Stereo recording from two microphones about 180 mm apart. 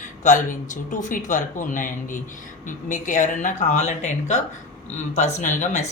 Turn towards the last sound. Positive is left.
turn(degrees=40)  # may be behind; listen again after turning